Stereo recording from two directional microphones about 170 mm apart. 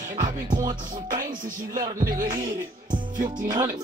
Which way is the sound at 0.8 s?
55° right (ahead or behind).